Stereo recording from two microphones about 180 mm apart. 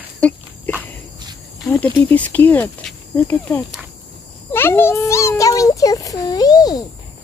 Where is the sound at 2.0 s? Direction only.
10° left (ahead or behind).